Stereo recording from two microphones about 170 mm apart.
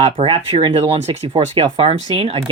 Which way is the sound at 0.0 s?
35° right (ahead or behind).